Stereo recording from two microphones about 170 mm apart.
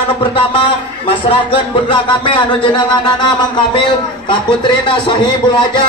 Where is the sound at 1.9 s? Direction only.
30° left (ahead or behind).